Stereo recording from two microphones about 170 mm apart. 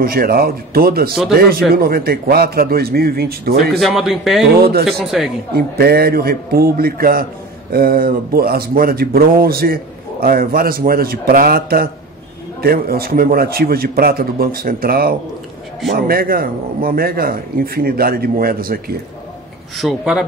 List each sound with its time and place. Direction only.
0.0 s a man's voice: 60° right (ahead or behind)
3.8 s speech: centre (ahead or behind)
4.6 s speech: 70° right (ahead or behind)
4.8 s speech: centre (ahead or behind)
5.5 s a man's voice: 65° right (ahead or behind)
19.8 s speech: centre (ahead or behind)